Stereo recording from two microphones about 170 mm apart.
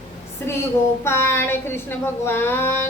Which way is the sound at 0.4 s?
15° left (ahead or behind).